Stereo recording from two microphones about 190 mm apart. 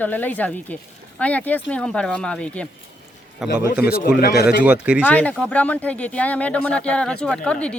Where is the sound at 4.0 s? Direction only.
50° left (ahead or behind).